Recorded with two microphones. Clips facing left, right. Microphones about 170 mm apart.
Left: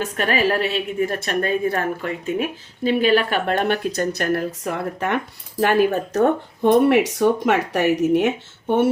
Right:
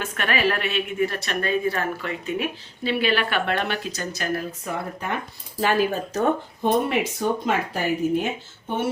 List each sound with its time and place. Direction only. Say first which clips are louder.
0.0 s a woman's voice: left 3 dB; 40° left (ahead or behind); by 8.9 s 65° left (ahead or behind)